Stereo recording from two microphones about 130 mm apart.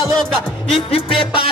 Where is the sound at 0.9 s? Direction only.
40° left (ahead or behind).